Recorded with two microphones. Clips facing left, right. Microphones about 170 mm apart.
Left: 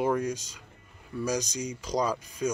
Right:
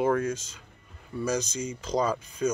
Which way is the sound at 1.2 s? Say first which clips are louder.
Right 1 dB; 15° left (ahead or behind).